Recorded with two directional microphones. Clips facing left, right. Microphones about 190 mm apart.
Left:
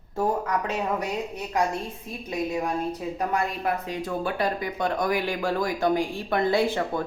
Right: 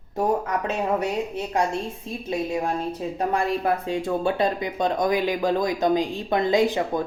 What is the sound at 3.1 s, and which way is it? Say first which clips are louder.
Speech: right 5 dB; 30° right (ahead or behind).